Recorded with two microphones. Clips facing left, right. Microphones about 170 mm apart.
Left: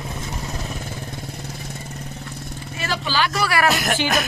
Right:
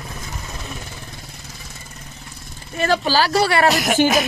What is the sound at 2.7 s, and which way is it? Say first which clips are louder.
Speech: right 6 dB; 50° right (ahead or behind).